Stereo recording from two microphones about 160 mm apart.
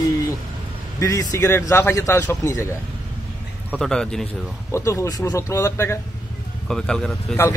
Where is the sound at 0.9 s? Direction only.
20° left (ahead or behind).